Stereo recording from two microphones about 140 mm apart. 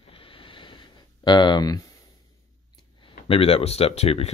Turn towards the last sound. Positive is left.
turn(degrees=50)  # may be behind; listen again after turning